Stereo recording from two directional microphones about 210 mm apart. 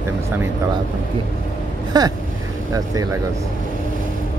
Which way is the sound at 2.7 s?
15° right (ahead or behind).